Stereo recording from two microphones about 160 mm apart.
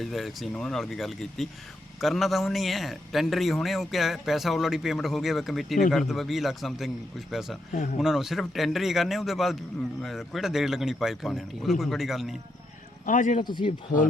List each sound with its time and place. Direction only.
0.0 s a man's voice: centre (ahead or behind)
13.1 s speech: 55° left (ahead or behind)
13.4 s speech: 30° left (ahead or behind)
13.7 s speech: 55° left (ahead or behind)